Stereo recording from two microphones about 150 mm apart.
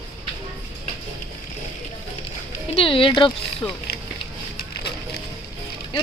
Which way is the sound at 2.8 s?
35° left (ahead or behind).